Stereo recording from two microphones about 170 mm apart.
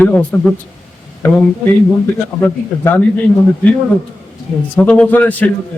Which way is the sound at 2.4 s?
10° left (ahead or behind).